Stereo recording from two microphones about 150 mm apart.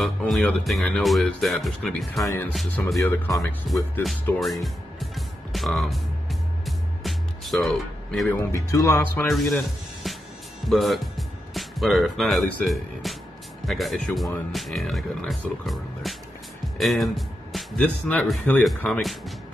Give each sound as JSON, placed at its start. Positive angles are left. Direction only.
{"t": 0.0, "sound": "speech", "side_deg": 0}
{"t": 3.0, "sound": "speech", "side_deg": 20}
{"t": 4.4, "sound": "music", "side_deg": 0}
{"t": 8.3, "sound": "speech", "side_deg": 20}
{"t": 9.3, "sound": "speech", "side_deg": 0}
{"t": 10.0, "sound": "music", "side_deg": 0}
{"t": 10.7, "sound": "speech", "side_deg": 0}
{"t": 16.7, "sound": "music", "side_deg": 0}
{"t": 17.8, "sound": "speech", "side_deg": 10}